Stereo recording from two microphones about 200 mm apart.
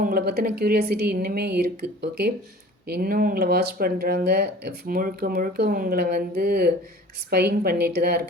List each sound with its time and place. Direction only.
0.0 s speech: 50° right (ahead or behind)